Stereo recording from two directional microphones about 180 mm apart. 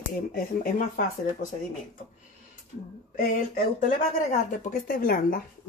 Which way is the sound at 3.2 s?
50° left (ahead or behind).